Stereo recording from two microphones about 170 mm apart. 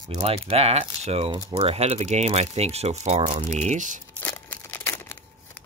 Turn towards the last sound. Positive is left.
turn(degrees=15)  # may be behind; listen again after turning